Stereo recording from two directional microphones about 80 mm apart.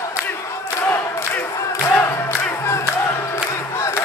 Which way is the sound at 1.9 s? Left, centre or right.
Left.